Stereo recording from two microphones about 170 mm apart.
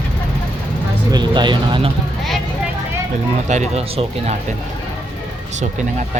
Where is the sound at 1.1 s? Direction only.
25° right (ahead or behind).